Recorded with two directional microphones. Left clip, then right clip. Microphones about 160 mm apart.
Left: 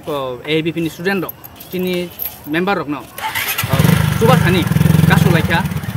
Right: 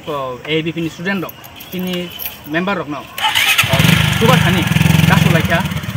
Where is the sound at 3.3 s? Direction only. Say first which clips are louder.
Right 7 dB; 40° left (ahead or behind).